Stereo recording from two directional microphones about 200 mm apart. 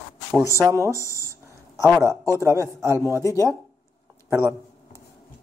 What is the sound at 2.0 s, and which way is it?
Speech, 15° right (ahead or behind).